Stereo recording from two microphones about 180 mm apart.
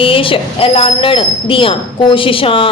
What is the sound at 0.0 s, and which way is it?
Speech, 30° left (ahead or behind).